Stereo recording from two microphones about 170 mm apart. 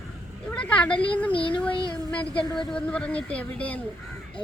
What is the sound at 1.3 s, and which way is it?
Speech, 30° left (ahead or behind).